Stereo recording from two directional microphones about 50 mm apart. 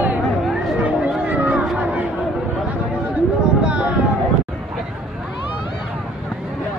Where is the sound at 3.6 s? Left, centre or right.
Right.